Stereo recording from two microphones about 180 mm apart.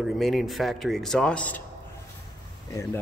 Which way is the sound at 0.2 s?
Centre (ahead or behind).